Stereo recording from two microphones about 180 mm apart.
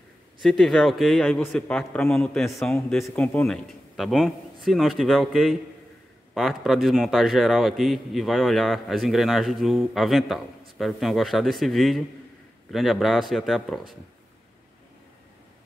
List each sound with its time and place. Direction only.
0.4 s a man's voice: centre (ahead or behind)